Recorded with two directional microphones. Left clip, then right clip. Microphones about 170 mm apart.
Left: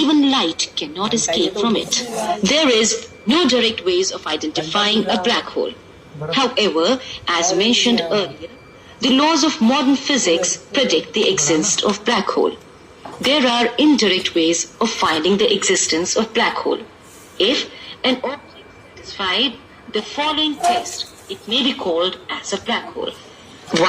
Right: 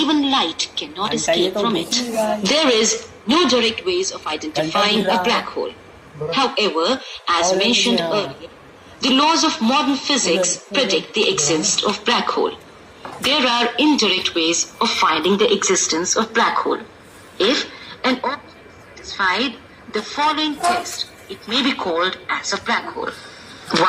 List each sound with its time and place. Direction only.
0.0 s a man's voice: 35° left (ahead or behind); by 15.2 s 20° left (ahead or behind)
15.2 s a woman's voice: 10° left (ahead or behind)